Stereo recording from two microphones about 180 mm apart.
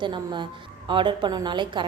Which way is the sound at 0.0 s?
25° right (ahead or behind).